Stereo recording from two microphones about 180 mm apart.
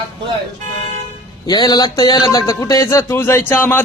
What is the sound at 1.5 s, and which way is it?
A man's voice, 20° left (ahead or behind).